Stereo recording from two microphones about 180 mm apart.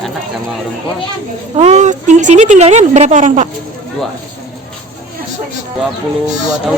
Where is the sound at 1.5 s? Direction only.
35° right (ahead or behind).